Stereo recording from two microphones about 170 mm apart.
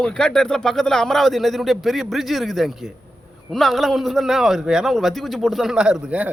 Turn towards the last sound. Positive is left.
turn(degrees=-5)  # may be behind; listen again after turning